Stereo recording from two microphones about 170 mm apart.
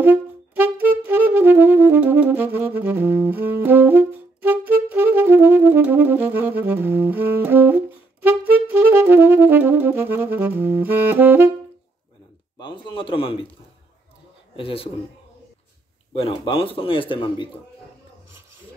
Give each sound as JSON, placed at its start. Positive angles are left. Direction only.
{"t": 0.0, "sound": "music", "side_deg": -10}
{"t": 12.5, "sound": "a man's voice", "side_deg": 30}
{"t": 14.6, "sound": "a man's voice", "side_deg": 35}
{"t": 16.1, "sound": "a man's voice", "side_deg": 30}